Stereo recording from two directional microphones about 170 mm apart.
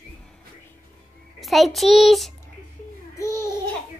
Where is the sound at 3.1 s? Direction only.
20° left (ahead or behind).